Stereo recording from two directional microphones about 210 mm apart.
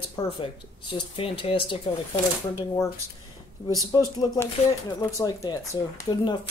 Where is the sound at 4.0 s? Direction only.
15° left (ahead or behind).